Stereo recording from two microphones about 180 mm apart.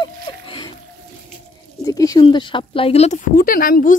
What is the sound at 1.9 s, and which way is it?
Speech, 20° left (ahead or behind).